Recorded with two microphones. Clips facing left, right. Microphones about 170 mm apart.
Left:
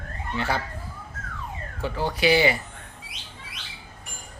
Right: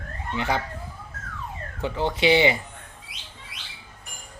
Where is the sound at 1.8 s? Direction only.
20° right (ahead or behind).